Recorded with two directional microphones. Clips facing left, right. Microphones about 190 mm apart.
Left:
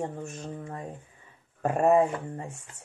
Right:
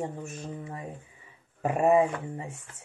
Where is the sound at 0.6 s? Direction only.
5° right (ahead or behind).